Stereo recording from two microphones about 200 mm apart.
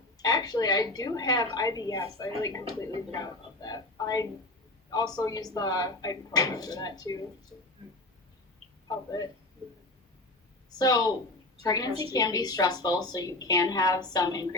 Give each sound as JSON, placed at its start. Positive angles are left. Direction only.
{"t": 0.2, "sound": "a woman's voice", "side_deg": 20}
{"t": 8.9, "sound": "a woman's voice", "side_deg": 15}
{"t": 10.7, "sound": "a woman's voice", "side_deg": 20}